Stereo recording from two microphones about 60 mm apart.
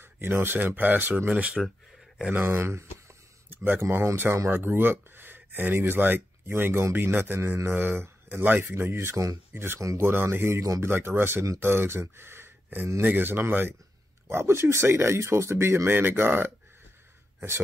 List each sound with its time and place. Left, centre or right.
0.0 s speech: right
1.3 s speech: centre
2.3 s speech: right
3.4 s a sound: right
3.9 s speech: right
4.5 s speech: right
14.2 s speech: right